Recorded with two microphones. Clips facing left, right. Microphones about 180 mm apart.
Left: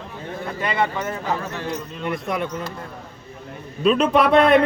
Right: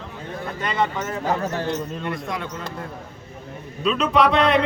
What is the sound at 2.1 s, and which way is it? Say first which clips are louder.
Speech: left 8 dB; 20° left (ahead or behind).